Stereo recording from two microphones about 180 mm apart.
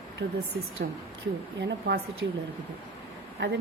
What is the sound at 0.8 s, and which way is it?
Speech, 55° right (ahead or behind).